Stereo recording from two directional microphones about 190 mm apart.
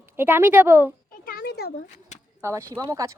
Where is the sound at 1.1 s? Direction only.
50° left (ahead or behind).